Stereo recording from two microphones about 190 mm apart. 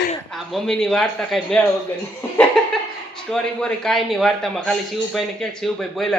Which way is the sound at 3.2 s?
5° left (ahead or behind).